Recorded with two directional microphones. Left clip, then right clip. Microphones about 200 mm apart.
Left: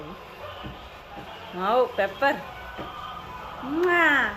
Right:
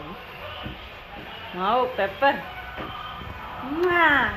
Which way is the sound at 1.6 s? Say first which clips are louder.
Even; 20° left (ahead or behind).